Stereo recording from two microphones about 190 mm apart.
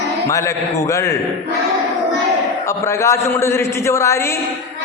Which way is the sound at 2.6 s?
15° left (ahead or behind).